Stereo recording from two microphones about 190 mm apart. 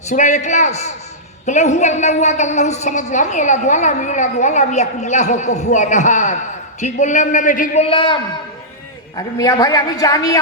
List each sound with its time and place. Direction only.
0.1 s a woman's voice: 40° left (ahead or behind); by 10.3 s 20° left (ahead or behind)